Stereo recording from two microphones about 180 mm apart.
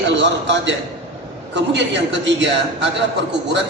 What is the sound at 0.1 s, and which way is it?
Speech, 90° right.